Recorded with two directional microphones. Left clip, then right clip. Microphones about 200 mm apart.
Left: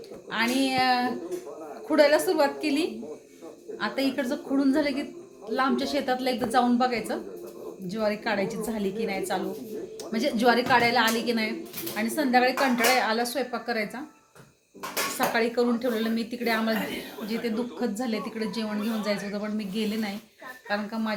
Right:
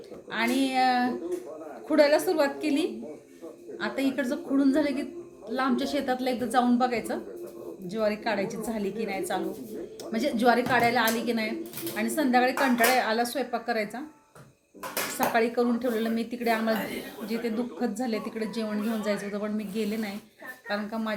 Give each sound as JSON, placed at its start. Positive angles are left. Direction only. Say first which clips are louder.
{"t": 0.3, "sound": "a woman's voice", "louder": "left 1 dB", "side_deg": 10}
{"t": 15.3, "sound": "speech", "louder": "right 1 dB", "side_deg": 5}